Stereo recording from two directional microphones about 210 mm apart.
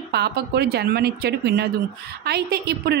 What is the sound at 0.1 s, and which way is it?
Speech, 50° right (ahead or behind).